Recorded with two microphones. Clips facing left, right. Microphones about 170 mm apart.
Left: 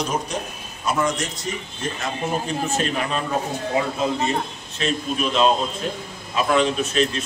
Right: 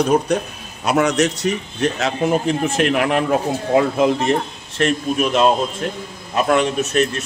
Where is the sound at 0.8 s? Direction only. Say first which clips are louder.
Right 7 dB; 70° right (ahead or behind).